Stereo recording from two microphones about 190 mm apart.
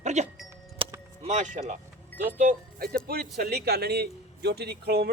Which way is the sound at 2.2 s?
45° right (ahead or behind).